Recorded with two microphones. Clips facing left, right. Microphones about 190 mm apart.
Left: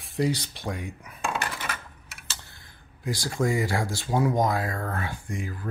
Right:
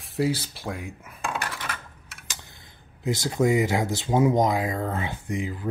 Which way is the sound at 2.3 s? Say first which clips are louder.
Right 1 dB; 15° right (ahead or behind).